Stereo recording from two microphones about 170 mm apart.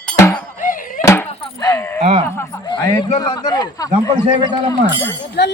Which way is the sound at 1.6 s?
15° left (ahead or behind).